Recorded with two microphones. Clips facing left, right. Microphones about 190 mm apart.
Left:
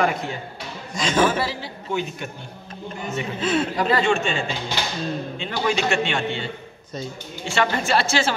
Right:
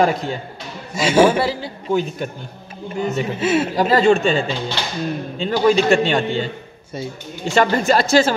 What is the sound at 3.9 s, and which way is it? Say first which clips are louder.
A man's voice: right 8 dB; 35° right (ahead or behind).